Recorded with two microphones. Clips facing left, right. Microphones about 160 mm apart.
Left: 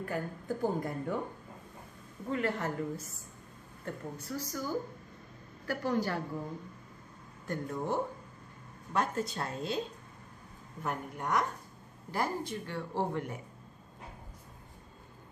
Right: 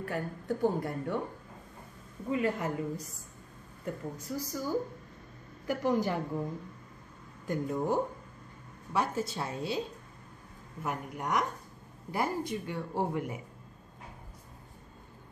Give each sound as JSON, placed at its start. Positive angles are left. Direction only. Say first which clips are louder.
{"t": 0.0, "sound": "a woman's voice", "louder": "right 1 dB", "side_deg": 0}
{"t": 2.3, "sound": "speech", "louder": "right 2 dB", "side_deg": -10}
{"t": 5.7, "sound": "speech", "louder": "right 3 dB", "side_deg": -15}
{"t": 7.4, "sound": "a woman's voice", "louder": "right 4 dB", "side_deg": -15}
{"t": 10.8, "sound": "speech", "louder": "right 1 dB", "side_deg": -10}